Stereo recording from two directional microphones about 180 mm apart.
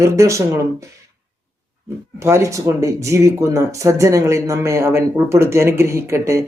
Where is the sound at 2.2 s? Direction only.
15° right (ahead or behind).